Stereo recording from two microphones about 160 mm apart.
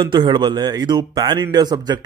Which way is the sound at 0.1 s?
30° right (ahead or behind).